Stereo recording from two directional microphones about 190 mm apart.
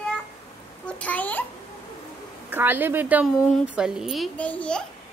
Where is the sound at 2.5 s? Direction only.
10° right (ahead or behind); by 4.8 s 5° left (ahead or behind).